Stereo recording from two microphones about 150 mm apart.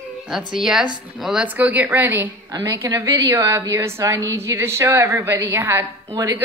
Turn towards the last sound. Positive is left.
turn(degrees=-20)  # may be behind; listen again after turning